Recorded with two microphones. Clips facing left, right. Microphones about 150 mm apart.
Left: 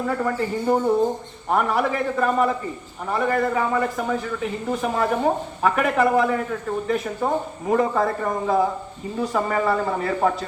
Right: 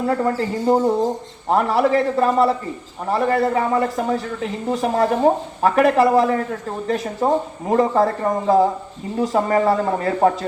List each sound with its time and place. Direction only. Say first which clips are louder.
0.1 s speech: right 3 dB; 35° right (ahead or behind)